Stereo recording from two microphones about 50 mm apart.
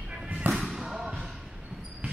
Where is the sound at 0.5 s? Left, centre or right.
Centre.